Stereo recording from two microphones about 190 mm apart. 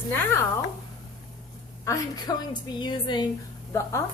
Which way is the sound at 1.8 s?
20° left (ahead or behind).